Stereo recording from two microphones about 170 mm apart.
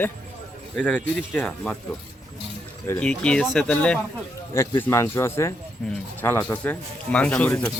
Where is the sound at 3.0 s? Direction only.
5° left (ahead or behind).